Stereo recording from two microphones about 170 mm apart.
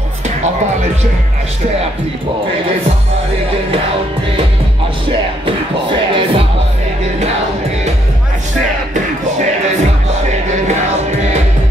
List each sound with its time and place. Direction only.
5.4 s music: 30° right (ahead or behind)
10.5 s music: 45° right (ahead or behind)